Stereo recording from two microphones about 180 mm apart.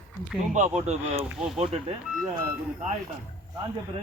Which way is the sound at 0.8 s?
35° right (ahead or behind).